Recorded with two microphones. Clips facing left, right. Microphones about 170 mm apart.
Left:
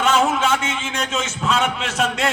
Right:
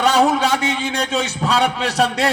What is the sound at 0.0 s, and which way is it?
A man's voice, 35° right (ahead or behind).